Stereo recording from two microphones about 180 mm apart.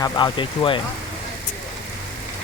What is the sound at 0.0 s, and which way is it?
Speech, 25° left (ahead or behind).